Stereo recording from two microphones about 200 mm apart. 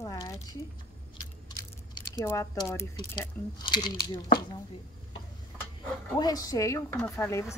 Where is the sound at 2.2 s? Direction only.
15° left (ahead or behind).